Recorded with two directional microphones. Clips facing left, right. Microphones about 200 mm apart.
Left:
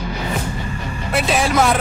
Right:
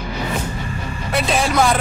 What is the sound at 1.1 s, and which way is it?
Music, 5° left (ahead or behind).